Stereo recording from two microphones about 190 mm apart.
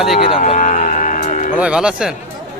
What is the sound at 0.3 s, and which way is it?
Cattle, 30° left (ahead or behind).